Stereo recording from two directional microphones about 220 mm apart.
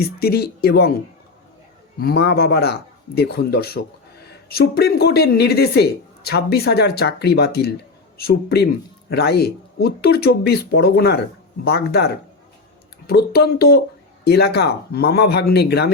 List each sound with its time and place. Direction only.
0.0 s speech: 45° left (ahead or behind)
2.0 s speech: 45° left (ahead or behind)